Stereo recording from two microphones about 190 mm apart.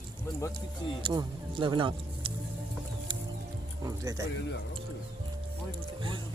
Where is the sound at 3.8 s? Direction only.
15° right (ahead or behind).